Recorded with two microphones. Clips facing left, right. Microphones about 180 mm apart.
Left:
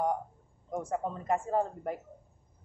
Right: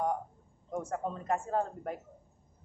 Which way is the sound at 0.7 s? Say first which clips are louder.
Left 2 dB; 10° left (ahead or behind).